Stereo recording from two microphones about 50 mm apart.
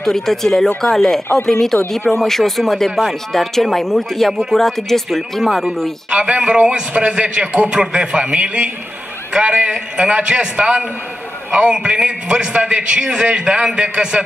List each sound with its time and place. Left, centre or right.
0.0 s speech: centre
4.3 s speech: centre
4.6 s speech: centre
6.0 s a man's voice: centre